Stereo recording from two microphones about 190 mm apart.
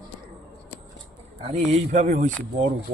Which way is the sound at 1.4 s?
35° right (ahead or behind).